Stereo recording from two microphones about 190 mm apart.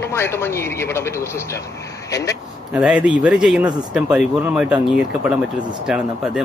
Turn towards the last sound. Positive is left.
turn(degrees=-5)  # may be behind; listen again after turning